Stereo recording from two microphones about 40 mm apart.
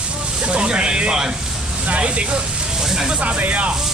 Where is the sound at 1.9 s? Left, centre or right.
Right.